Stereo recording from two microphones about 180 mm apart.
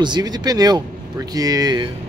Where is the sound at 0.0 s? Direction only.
25° right (ahead or behind).